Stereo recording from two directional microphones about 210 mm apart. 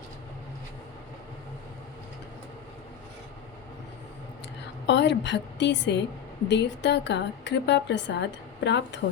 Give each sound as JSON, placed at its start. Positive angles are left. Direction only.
{"t": 4.9, "sound": "a woman's voice", "side_deg": 55}